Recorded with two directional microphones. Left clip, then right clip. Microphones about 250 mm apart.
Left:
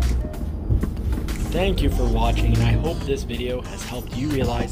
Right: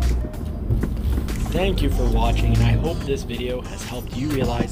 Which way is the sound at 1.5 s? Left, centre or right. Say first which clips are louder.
Even; centre.